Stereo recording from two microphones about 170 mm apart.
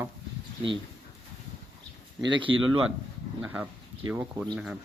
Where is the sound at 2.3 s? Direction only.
30° right (ahead or behind).